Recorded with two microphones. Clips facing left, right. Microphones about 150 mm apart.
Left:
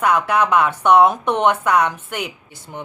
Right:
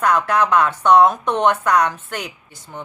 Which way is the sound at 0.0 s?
10° left (ahead or behind).